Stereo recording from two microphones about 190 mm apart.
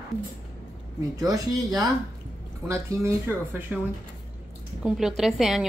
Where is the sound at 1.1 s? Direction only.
20° right (ahead or behind).